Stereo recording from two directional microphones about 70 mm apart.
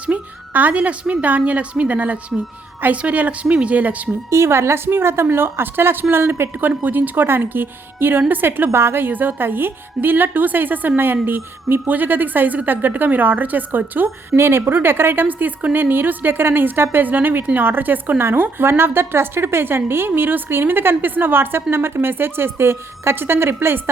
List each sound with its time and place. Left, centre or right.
0.0 s a woman's voice: right
4.3 s a woman's voice: right